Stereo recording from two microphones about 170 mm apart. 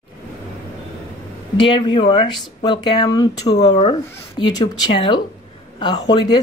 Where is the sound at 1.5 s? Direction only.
30° left (ahead or behind).